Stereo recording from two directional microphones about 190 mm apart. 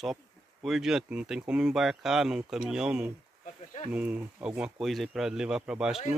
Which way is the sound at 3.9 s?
5° right (ahead or behind).